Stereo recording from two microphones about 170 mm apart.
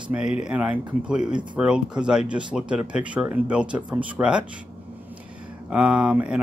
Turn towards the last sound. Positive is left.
turn(degrees=-5)  # may be behind; listen again after turning